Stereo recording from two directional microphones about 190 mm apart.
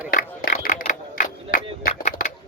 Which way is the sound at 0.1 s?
50° left (ahead or behind).